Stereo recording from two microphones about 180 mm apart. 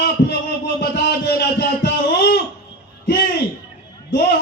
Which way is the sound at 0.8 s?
70° left (ahead or behind).